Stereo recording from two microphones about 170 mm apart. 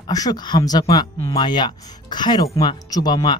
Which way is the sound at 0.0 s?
20° left (ahead or behind).